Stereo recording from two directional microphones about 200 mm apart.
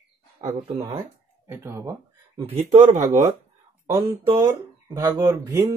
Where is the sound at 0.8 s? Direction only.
15° right (ahead or behind).